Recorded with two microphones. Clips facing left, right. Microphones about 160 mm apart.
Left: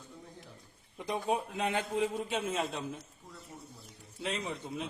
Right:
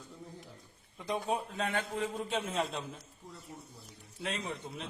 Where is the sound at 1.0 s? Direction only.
15° left (ahead or behind).